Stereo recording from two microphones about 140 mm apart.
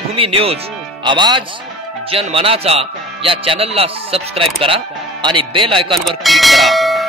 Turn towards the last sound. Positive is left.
turn(degrees=0)  # may be behind; listen again after turning